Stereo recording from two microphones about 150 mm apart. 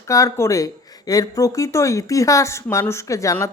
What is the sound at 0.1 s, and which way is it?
A woman's voice, 20° left (ahead or behind).